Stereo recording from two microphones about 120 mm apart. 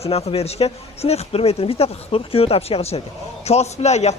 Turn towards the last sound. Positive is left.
turn(degrees=65)  # may be behind; listen again after turning